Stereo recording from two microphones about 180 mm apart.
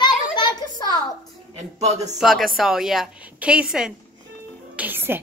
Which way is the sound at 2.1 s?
Centre (ahead or behind).